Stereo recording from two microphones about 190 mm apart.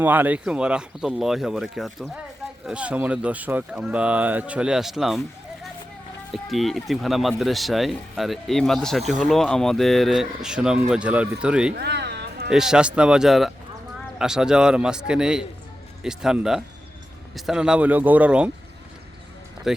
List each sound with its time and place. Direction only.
0.0 s speech: 10° right (ahead or behind)
6.3 s speech: centre (ahead or behind)
11.7 s a sound: 60° right (ahead or behind)
12.5 s speech: 5° right (ahead or behind)
19.7 s speech: centre (ahead or behind)